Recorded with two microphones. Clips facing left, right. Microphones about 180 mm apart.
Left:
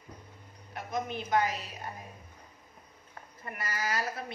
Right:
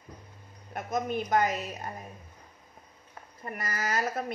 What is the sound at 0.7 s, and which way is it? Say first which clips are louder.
A woman's voice: right 4 dB; 45° right (ahead or behind).